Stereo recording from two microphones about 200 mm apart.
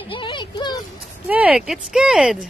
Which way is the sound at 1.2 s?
5° right (ahead or behind).